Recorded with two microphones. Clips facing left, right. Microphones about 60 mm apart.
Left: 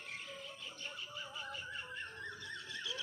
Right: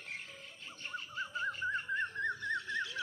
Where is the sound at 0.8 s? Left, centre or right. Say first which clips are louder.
Right 8 dB; right.